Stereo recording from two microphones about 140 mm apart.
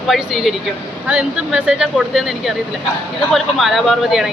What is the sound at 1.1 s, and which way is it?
A woman's voice, 5° right (ahead or behind).